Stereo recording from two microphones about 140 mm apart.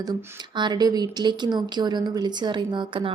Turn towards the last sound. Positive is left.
turn(degrees=-35)  # may be behind; listen again after turning